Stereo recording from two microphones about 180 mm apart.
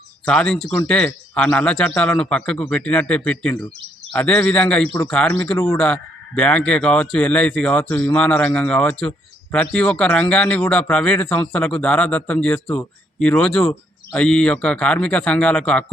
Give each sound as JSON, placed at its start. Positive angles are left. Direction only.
{"t": 0.3, "sound": "speech", "side_deg": 5}